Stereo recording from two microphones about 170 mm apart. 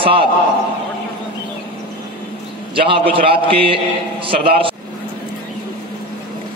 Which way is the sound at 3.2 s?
30° right (ahead or behind).